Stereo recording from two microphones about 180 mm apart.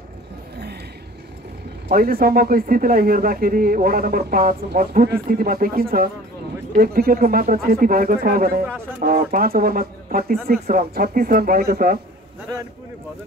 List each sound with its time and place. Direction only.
1.9 s speech: 55° right (ahead or behind)